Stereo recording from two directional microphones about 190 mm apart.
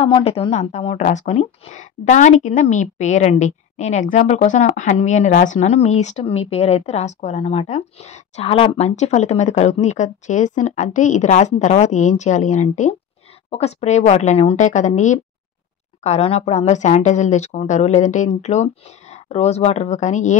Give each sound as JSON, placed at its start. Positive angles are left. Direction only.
{"t": 0.0, "sound": "a woman's voice", "side_deg": 30}